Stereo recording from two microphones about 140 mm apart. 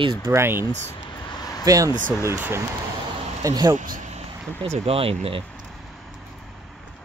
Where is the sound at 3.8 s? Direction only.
65° right (ahead or behind).